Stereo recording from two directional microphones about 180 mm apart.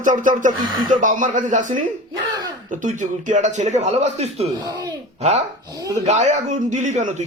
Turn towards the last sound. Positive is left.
turn(degrees=-40)  # may be behind; listen again after turning